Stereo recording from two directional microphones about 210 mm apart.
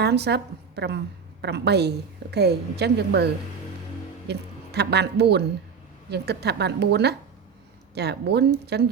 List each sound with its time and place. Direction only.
0.0 s a woman's voice: 50° right (ahead or behind)
4.3 s a woman's voice: 50° right (ahead or behind)